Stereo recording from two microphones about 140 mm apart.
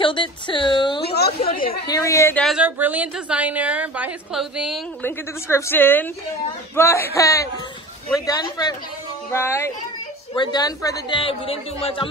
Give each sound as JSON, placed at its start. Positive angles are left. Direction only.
{"t": 0.0, "sound": "a sound", "side_deg": 35}
{"t": 1.4, "sound": "a sound", "side_deg": 90}
{"t": 1.9, "sound": "a woman's voice", "side_deg": 20}
{"t": 2.5, "sound": "a woman's voice", "side_deg": -10}
{"t": 5.0, "sound": "a woman's voice", "side_deg": 15}
{"t": 9.3, "sound": "speech", "side_deg": 15}
{"t": 10.3, "sound": "a woman's voice", "side_deg": 30}
{"t": 11.1, "sound": "speech", "side_deg": 40}